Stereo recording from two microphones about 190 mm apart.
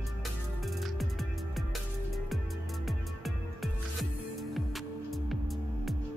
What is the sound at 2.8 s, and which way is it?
Music, centre (ahead or behind).